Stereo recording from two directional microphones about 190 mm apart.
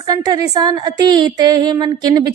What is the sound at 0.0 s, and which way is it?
A woman's voice, 20° right (ahead or behind).